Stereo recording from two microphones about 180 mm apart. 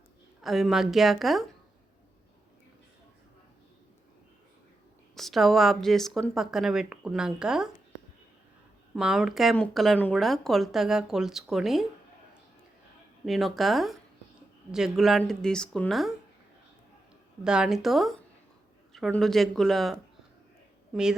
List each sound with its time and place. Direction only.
0.4 s speech: centre (ahead or behind)
5.1 s speech: centre (ahead or behind)
9.0 s speech: 5° right (ahead or behind)
13.2 s speech: centre (ahead or behind)
17.4 s speech: 5° right (ahead or behind)